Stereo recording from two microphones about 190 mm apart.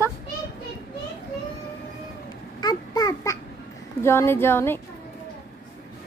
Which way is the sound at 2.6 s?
20° left (ahead or behind).